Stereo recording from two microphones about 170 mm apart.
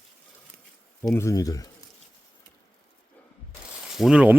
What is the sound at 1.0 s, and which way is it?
Speech, 15° left (ahead or behind).